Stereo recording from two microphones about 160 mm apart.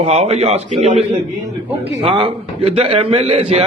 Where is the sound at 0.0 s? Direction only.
40° right (ahead or behind).